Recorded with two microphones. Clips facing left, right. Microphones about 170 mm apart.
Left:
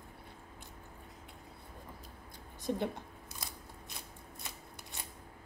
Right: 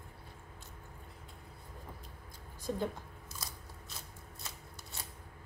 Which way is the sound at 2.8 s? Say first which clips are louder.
Even; 60° left (ahead or behind).